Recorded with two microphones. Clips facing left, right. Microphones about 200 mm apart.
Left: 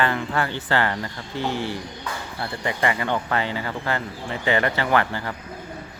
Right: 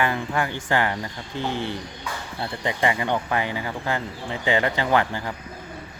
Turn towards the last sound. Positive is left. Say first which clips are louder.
# even
turn(degrees=-15)  # may be behind; listen again after turning